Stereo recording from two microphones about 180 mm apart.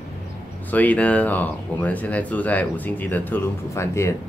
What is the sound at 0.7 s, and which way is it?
Speech, 10° left (ahead or behind).